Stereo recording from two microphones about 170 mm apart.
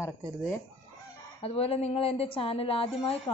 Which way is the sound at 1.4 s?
35° left (ahead or behind).